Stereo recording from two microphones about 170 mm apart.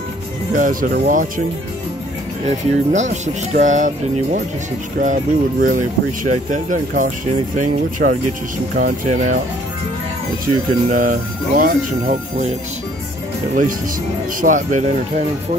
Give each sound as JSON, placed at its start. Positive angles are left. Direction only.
{"t": 0.6, "sound": "speech", "side_deg": -55}
{"t": 2.4, "sound": "speech", "side_deg": -45}
{"t": 10.4, "sound": "speech", "side_deg": -50}
{"t": 14.4, "sound": "speech", "side_deg": -50}